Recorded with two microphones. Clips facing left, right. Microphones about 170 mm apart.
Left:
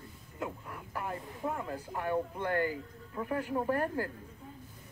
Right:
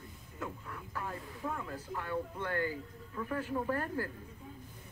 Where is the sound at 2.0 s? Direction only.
15° left (ahead or behind).